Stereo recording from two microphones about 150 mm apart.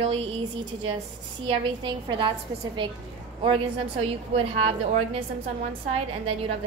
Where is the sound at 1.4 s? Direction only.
40° right (ahead or behind).